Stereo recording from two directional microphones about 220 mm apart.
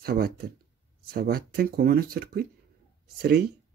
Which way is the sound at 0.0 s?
45° right (ahead or behind).